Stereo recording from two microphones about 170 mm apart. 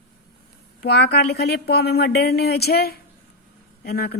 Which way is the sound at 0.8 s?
75° left (ahead or behind).